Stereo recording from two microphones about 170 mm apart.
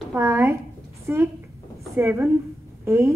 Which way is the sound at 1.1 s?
10° right (ahead or behind).